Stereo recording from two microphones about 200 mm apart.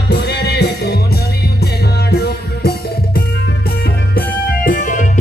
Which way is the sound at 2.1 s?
50° left (ahead or behind).